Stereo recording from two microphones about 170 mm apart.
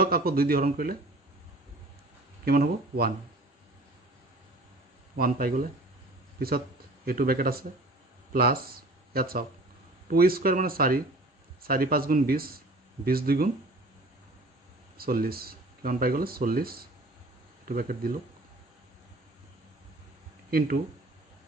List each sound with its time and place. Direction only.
0.0 s speech: 60° right (ahead or behind)
2.4 s speech: 65° right (ahead or behind)
5.1 s speech: 60° right (ahead or behind)
7.1 s speech: 60° right (ahead or behind)
15.0 s speech: 60° right (ahead or behind)
20.5 s speech: 60° right (ahead or behind)